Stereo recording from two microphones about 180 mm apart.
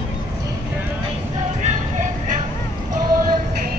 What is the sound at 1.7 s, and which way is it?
Music, 45° right (ahead or behind).